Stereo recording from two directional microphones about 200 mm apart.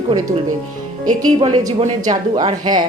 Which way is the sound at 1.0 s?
90° right.